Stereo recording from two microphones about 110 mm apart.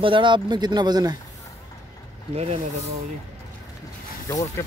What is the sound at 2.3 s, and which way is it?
Speech, 75° right (ahead or behind).